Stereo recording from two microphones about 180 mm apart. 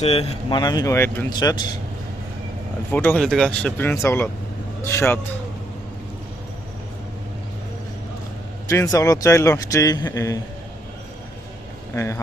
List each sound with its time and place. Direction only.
0.0 s speech: 35° left (ahead or behind)
0.6 s speech: 20° left (ahead or behind)
1.3 s a man's voice: 25° left (ahead or behind)
2.9 s speech: 10° left (ahead or behind)
8.6 s a man's voice: 15° left (ahead or behind)
11.9 s speech: 15° left (ahead or behind)